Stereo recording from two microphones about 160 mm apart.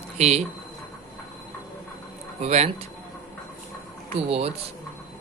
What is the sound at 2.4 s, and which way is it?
Speech, 45° right (ahead or behind).